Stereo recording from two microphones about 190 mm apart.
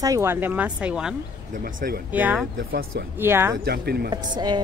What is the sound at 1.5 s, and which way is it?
Speech, 50° right (ahead or behind).